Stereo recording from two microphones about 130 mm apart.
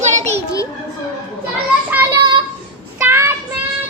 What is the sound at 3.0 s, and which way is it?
Child singing, 20° right (ahead or behind).